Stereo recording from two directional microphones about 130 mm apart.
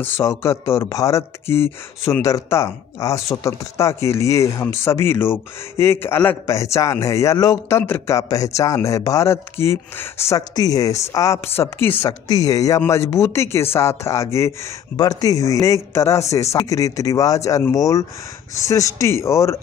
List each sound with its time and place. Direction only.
0.0 s speech: 20° left (ahead or behind)
12.3 s speech: 25° left (ahead or behind)